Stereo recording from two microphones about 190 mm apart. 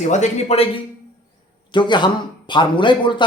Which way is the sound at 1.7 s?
25° left (ahead or behind).